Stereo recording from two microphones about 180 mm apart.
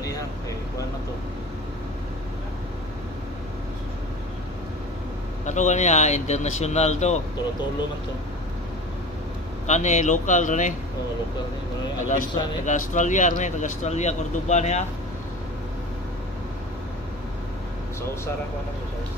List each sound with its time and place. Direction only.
5.4 s speech: 40° left (ahead or behind)
9.7 s speech: 40° left (ahead or behind)
12.1 s speech: 45° left (ahead or behind)